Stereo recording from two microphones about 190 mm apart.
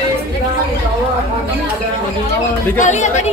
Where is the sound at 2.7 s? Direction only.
40° left (ahead or behind).